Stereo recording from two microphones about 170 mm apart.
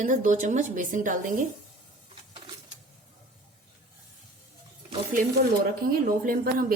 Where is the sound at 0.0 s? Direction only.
50° right (ahead or behind).